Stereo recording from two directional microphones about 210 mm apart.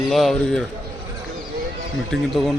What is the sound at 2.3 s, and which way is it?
Speech, centre (ahead or behind).